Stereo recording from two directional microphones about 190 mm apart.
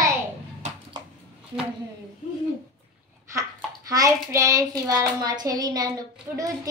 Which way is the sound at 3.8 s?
15° right (ahead or behind).